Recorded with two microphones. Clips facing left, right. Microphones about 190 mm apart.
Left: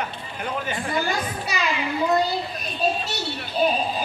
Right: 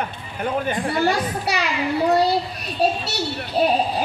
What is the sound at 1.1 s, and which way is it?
Speech, 70° right (ahead or behind).